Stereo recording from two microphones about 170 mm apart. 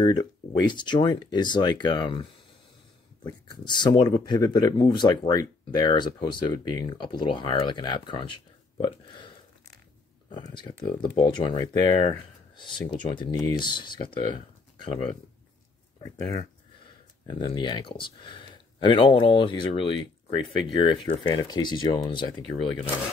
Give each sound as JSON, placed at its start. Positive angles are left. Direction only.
{"t": 0.0, "sound": "speech", "side_deg": 25}
{"t": 3.3, "sound": "speech", "side_deg": 25}
{"t": 10.3, "sound": "speech", "side_deg": 25}
{"t": 16.0, "sound": "speech", "side_deg": 20}